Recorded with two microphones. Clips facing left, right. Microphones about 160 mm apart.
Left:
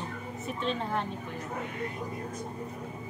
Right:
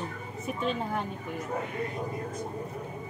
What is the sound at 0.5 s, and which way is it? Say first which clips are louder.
Speech: right 1 dB; 5° right (ahead or behind).